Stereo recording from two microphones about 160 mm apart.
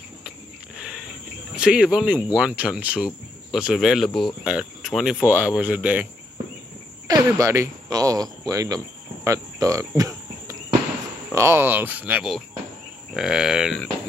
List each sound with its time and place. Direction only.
1.5 s speech: 5° right (ahead or behind)
7.1 s speech: 20° right (ahead or behind); by 13.8 s 5° right (ahead or behind)